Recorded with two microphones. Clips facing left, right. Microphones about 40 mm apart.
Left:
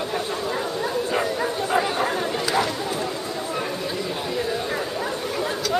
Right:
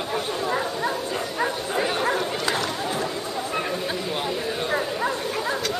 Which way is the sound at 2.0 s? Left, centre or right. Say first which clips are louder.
Even; centre.